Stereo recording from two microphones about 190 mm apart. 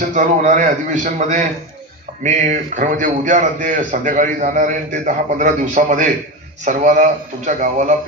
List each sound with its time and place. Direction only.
0.0 s a man's voice: 45° right (ahead or behind)